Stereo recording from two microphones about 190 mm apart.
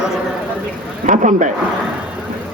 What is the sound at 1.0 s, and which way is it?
Speech, 40° right (ahead or behind).